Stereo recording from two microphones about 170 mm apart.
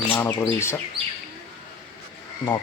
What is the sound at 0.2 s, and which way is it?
Speech, 15° left (ahead or behind).